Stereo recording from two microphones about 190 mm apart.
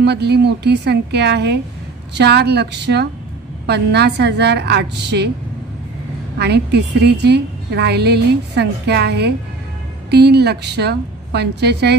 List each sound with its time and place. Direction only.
0.0 s a woman's voice: 60° right (ahead or behind)
6.3 s a woman's voice: 60° right (ahead or behind)